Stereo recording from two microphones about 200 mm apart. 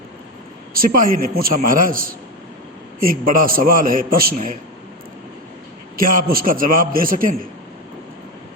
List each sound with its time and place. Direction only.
0.7 s a man's voice: 45° right (ahead or behind)
6.0 s a man's voice: 45° right (ahead or behind)